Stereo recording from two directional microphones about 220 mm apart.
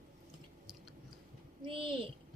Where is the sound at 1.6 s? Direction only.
25° right (ahead or behind).